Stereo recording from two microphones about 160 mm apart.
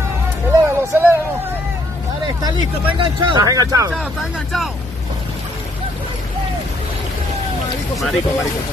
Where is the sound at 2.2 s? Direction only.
30° right (ahead or behind).